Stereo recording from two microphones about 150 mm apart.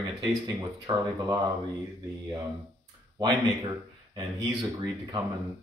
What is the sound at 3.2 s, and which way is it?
Speech, 25° right (ahead or behind).